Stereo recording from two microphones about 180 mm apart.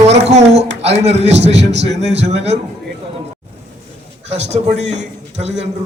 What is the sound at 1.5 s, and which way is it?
Speech, 75° right (ahead or behind).